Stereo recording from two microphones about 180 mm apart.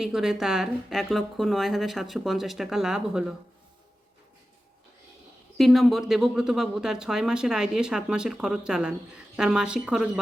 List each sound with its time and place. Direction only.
0.0 s speech: centre (ahead or behind)
5.5 s speech: centre (ahead or behind)